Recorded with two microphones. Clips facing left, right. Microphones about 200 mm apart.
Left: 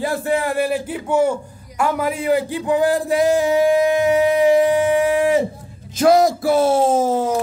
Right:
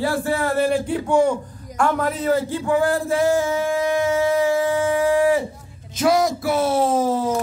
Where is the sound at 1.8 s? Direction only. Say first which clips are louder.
Even; 5° left (ahead or behind).